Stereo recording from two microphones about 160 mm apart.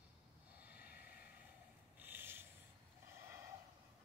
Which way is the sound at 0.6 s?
10° right (ahead or behind).